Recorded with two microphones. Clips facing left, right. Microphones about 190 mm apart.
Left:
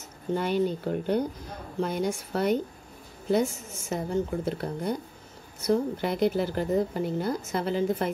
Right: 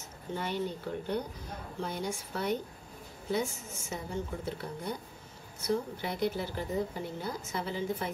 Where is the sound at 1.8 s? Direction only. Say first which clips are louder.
Left 8 dB; 80° left.